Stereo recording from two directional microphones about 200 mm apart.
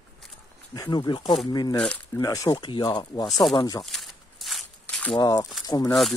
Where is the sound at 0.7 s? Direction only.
20° left (ahead or behind).